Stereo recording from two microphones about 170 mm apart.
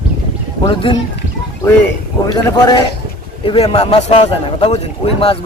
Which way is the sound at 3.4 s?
35° left (ahead or behind).